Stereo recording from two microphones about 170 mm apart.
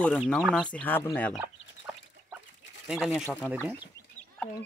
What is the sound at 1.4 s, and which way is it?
Chicken, 15° right (ahead or behind).